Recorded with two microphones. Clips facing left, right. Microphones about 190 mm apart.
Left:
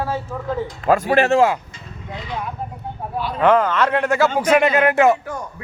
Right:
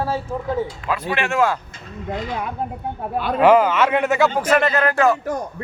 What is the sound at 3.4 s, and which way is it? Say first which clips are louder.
Speech: right 2 dB; 10° right (ahead or behind).